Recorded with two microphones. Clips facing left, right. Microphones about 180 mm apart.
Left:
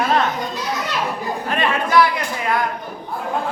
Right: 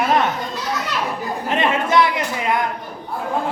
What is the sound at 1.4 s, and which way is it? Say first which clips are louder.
A man's voice: right 2 dB; 20° right (ahead or behind).